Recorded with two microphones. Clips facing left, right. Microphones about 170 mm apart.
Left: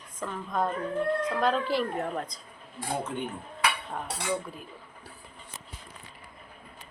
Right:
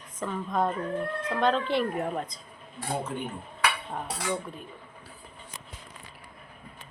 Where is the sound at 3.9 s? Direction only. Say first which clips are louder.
Even; centre (ahead or behind).